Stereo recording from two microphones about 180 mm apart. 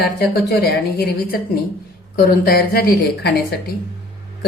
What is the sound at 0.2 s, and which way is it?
Speech, 65° left (ahead or behind).